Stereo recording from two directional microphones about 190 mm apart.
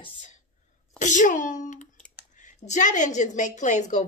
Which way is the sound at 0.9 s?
40° left (ahead or behind).